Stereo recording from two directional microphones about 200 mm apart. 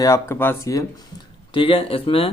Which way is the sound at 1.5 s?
25° left (ahead or behind).